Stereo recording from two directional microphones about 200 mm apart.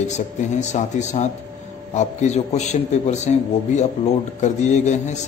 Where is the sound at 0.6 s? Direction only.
35° left (ahead or behind).